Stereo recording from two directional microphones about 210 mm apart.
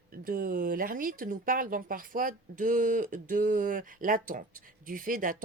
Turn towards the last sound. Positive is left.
turn(degrees=-40)  # may be behind; listen again after turning